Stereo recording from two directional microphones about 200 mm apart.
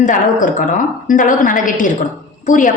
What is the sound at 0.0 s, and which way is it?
A woman's voice, 40° left (ahead or behind).